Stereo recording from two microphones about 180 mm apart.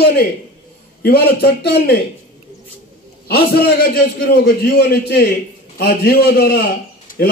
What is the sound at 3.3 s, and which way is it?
A man's voice, 60° left (ahead or behind).